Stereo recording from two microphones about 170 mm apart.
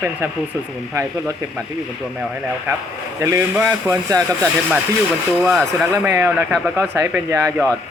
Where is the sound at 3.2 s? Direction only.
20° right (ahead or behind).